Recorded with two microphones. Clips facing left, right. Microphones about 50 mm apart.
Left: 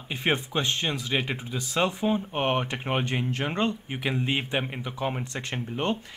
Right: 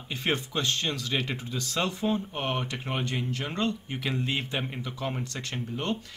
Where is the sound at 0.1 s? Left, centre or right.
Left.